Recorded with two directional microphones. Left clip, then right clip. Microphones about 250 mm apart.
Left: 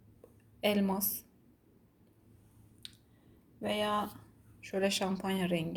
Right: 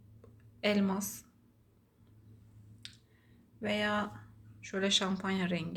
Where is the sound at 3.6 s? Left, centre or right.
Left.